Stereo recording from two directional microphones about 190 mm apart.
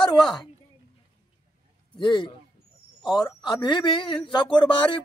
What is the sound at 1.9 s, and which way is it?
Speech, 25° left (ahead or behind).